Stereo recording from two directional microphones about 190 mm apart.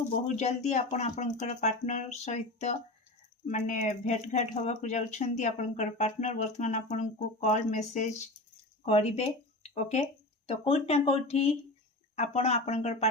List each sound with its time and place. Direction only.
0.3 s speech: 35° left (ahead or behind)